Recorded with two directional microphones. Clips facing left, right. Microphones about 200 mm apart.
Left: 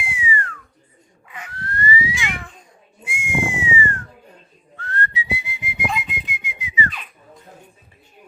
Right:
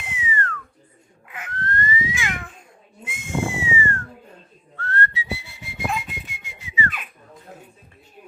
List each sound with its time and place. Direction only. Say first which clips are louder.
0.0 s whistling: left 2 dB; 10° left (ahead or behind)
1.5 s a sound: left 2 dB; 10° left (ahead or behind)
3.0 s whistling: left 1 dB; 10° left (ahead or behind)